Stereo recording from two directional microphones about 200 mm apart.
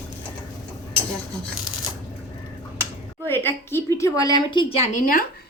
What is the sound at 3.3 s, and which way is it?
A woman's voice, 10° left (ahead or behind).